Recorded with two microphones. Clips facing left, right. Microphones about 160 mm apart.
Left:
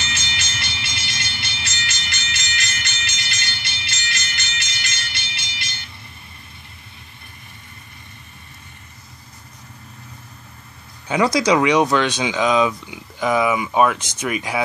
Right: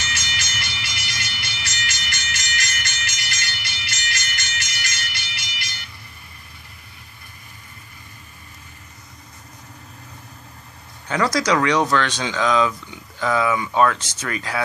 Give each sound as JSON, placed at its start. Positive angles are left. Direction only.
{"t": 0.0, "sound": "music", "side_deg": 25}
{"t": 2.4, "sound": "music", "side_deg": -45}
{"t": 2.9, "sound": "music", "side_deg": 25}
{"t": 4.4, "sound": "music", "side_deg": -45}
{"t": 4.6, "sound": "music", "side_deg": 25}
{"t": 11.1, "sound": "speech", "side_deg": 15}